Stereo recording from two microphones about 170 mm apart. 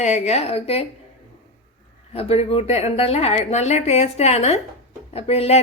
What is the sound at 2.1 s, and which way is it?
Speech, 35° left (ahead or behind).